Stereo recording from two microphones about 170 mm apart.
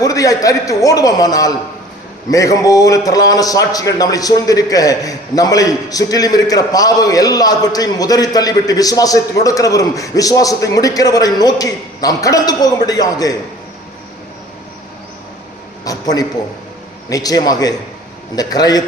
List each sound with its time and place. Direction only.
0.0 s a man's voice: 20° left (ahead or behind)
15.8 s a man's voice: 20° left (ahead or behind)